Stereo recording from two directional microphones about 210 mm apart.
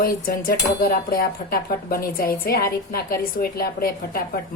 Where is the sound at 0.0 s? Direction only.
45° left (ahead or behind).